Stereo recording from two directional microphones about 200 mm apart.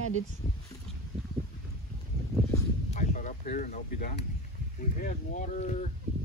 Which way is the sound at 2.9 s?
40° left (ahead or behind).